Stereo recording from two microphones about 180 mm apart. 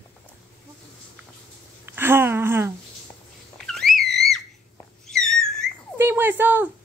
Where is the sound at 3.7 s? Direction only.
Centre (ahead or behind).